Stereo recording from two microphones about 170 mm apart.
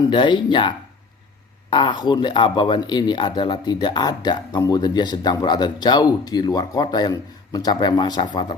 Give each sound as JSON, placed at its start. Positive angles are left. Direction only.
{"t": 0.0, "sound": "speech", "side_deg": 30}
{"t": 1.7, "sound": "speech", "side_deg": 25}